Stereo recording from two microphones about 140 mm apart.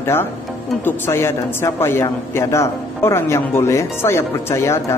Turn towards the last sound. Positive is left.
turn(degrees=20)  # may be behind; listen again after turning